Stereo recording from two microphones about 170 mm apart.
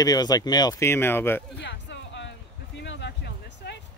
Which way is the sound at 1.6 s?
90° left.